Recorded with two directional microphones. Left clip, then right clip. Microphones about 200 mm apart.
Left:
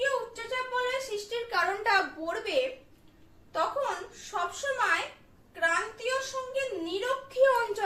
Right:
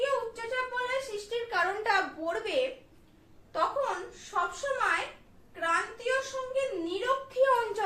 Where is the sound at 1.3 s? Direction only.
15° right (ahead or behind).